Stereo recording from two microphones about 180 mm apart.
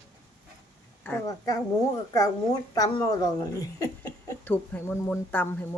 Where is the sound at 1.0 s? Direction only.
15° left (ahead or behind).